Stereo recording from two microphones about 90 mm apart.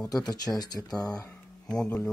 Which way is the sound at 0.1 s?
45° left (ahead or behind).